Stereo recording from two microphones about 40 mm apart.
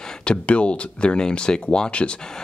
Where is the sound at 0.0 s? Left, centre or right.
Left.